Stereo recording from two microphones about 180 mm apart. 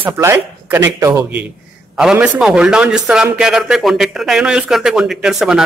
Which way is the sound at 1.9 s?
5° right (ahead or behind).